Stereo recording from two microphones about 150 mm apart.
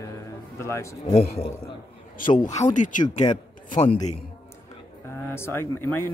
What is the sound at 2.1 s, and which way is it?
Speech, 60° left (ahead or behind).